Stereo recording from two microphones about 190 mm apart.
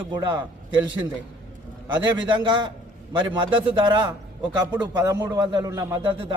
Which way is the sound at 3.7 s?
25° right (ahead or behind).